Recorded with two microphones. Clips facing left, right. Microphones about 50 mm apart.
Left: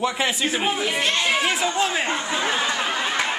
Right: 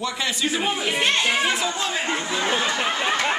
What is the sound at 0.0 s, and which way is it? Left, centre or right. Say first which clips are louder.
Speech: left 3 dB; centre.